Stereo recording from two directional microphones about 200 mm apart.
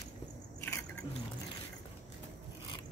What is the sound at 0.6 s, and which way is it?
Biting, 10° left (ahead or behind).